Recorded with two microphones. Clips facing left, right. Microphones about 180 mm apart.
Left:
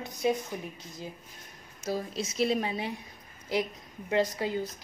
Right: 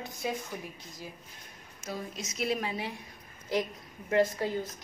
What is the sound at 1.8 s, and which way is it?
A woman's voice, 30° left (ahead or behind).